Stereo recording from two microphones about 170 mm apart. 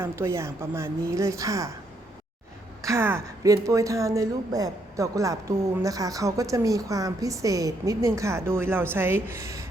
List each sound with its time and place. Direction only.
0.0 s a woman's voice: 15° right (ahead or behind)
2.8 s a woman's voice: 15° right (ahead or behind)